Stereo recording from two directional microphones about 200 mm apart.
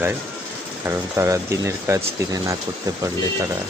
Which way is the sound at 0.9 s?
15° right (ahead or behind).